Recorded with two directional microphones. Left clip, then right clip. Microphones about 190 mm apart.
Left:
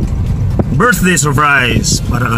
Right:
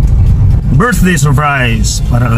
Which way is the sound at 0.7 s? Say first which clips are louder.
Left 1 dB; centre (ahead or behind).